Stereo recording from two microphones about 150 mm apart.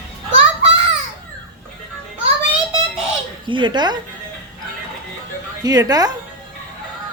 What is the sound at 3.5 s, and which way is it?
Speech, 30° right (ahead or behind).